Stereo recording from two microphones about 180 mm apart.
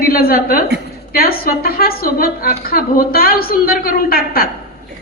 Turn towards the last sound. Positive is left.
turn(degrees=55)  # may be behind; listen again after turning